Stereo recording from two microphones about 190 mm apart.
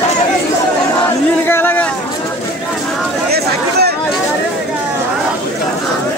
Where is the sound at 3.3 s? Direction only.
55° right (ahead or behind).